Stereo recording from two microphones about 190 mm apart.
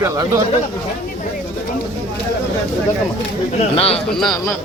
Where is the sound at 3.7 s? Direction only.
30° left (ahead or behind).